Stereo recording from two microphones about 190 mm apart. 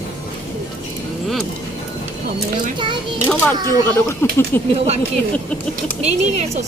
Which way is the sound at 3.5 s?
20° right (ahead or behind).